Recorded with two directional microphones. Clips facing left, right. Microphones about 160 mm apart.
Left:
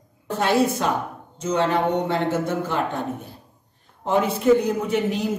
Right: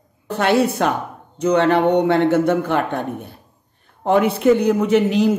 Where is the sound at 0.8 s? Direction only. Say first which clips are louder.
Right 4 dB; 65° right (ahead or behind).